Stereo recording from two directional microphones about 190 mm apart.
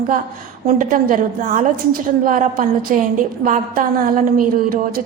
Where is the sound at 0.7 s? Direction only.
45° right (ahead or behind).